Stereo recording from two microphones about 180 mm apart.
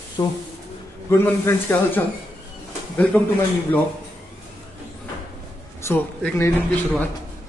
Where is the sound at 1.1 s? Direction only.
10° left (ahead or behind).